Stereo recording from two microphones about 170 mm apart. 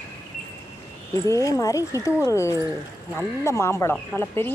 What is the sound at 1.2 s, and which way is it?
Speech, 20° left (ahead or behind).